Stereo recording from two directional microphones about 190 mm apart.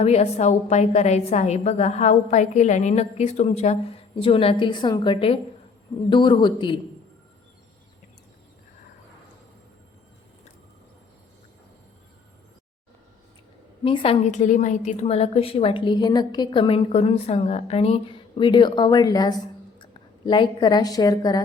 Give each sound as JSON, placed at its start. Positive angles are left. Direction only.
{"t": 0.0, "sound": "a woman's voice", "side_deg": 35}
{"t": 13.8, "sound": "a woman's voice", "side_deg": 30}